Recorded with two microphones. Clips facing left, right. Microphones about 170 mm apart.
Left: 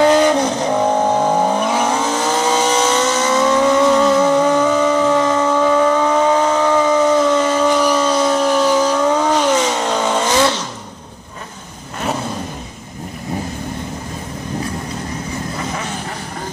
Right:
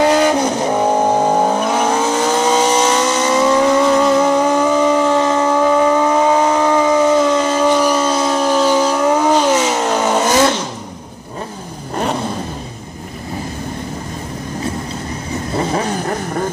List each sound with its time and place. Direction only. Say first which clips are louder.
0.1 s vehicle: even; 10° right (ahead or behind)
15.5 s vehicle: right 7 dB; 35° right (ahead or behind)